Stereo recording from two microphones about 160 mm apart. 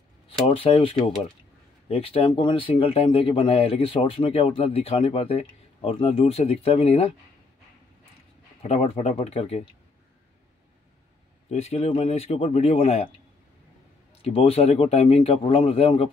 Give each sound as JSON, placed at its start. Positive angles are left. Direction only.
{"t": 0.5, "sound": "speech", "side_deg": 35}
{"t": 8.6, "sound": "speech", "side_deg": 40}
{"t": 11.5, "sound": "speech", "side_deg": 40}
{"t": 14.2, "sound": "speech", "side_deg": 40}